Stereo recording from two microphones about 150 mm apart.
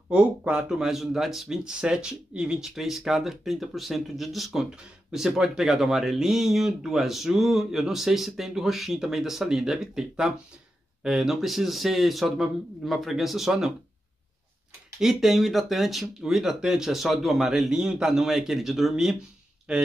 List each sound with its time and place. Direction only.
0.1 s speech: 5° right (ahead or behind)
15.0 s speech: centre (ahead or behind)